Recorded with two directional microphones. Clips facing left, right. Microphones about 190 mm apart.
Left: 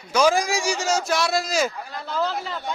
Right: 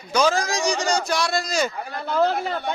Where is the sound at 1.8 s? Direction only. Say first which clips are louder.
Right 5 dB; 55° right (ahead or behind).